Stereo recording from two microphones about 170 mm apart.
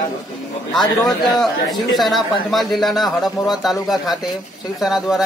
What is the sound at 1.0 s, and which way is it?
Speech, 25° left (ahead or behind).